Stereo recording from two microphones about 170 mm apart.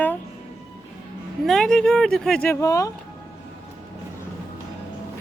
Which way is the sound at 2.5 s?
20° left (ahead or behind).